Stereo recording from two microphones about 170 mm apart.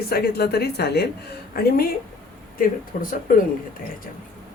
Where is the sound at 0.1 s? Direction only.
70° left (ahead or behind).